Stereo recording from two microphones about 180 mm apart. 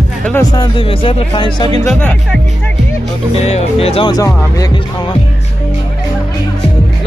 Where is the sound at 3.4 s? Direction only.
35° left (ahead or behind); by 4.7 s 20° left (ahead or behind).